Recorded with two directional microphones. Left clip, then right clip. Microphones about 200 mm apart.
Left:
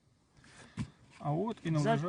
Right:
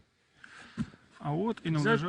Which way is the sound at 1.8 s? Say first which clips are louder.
Right 4 dB; 15° left (ahead or behind).